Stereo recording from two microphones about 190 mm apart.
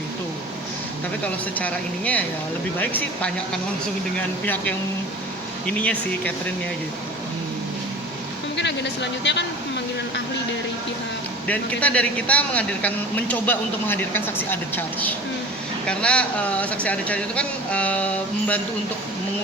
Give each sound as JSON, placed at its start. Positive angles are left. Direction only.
{"t": 1.5, "sound": "speech", "side_deg": 10}
{"t": 5.6, "sound": "speech", "side_deg": 5}
{"t": 8.5, "sound": "speech", "side_deg": 70}
{"t": 11.4, "sound": "speech", "side_deg": 5}